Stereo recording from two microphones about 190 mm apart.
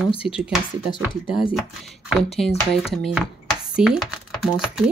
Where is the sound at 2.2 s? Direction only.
35° left (ahead or behind).